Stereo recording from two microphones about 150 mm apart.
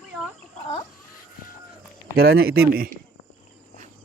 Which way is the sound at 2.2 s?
90° right.